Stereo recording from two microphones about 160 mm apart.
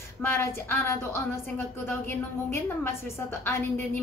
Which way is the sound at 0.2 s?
15° left (ahead or behind).